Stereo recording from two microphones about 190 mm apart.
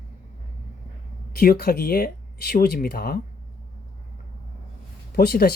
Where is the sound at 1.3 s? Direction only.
55° left (ahead or behind).